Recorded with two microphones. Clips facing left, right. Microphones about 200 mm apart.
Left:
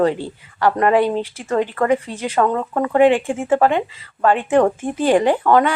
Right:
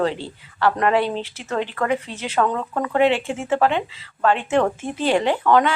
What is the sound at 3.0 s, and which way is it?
Speech, 50° left (ahead or behind).